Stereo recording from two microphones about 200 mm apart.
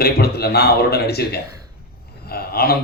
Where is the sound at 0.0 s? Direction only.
50° left (ahead or behind).